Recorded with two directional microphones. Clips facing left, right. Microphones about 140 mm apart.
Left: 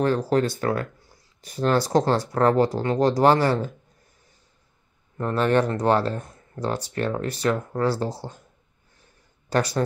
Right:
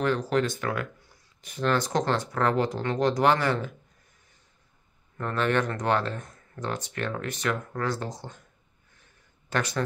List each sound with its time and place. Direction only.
0.3 s speech: 35° left (ahead or behind)
5.1 s speech: 35° left (ahead or behind)
9.5 s speech: 35° left (ahead or behind)